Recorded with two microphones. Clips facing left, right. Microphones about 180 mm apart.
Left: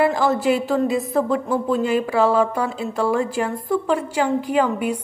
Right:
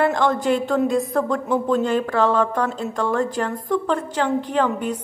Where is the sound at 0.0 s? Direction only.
5° left (ahead or behind).